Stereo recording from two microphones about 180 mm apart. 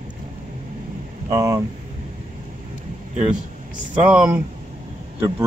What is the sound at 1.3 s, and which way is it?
Speech, 15° right (ahead or behind).